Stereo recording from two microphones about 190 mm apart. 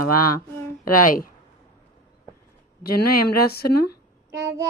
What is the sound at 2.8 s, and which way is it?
Speech, 55° left (ahead or behind).